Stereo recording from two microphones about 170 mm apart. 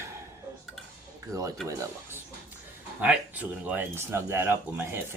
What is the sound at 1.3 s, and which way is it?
Speech, 20° right (ahead or behind).